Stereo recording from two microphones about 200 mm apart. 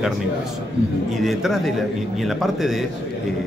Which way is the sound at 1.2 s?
Centre (ahead or behind).